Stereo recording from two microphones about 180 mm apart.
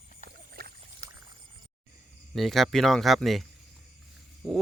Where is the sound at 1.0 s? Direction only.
40° right (ahead or behind).